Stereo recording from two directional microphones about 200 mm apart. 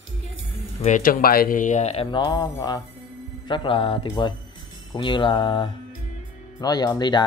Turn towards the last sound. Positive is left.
turn(degrees=20)  # may be behind; listen again after turning